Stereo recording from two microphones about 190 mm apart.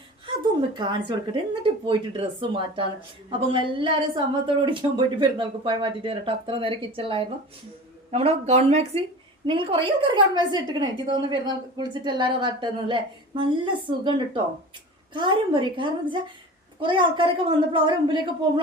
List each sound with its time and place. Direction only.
0.8 s a woman's voice: 25° right (ahead or behind)